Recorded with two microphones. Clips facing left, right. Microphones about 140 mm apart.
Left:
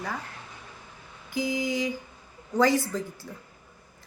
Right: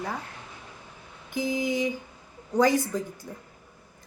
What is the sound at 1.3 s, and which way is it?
Speech, 20° right (ahead or behind).